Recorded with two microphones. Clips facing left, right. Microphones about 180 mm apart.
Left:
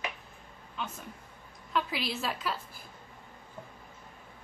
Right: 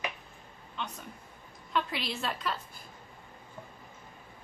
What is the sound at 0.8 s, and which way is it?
A woman's voice, 5° left (ahead or behind).